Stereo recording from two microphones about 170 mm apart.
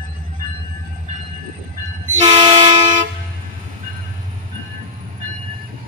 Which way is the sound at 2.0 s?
45° right (ahead or behind).